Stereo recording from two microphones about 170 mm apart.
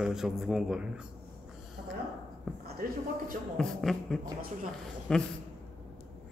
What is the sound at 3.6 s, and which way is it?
A man's voice, centre (ahead or behind).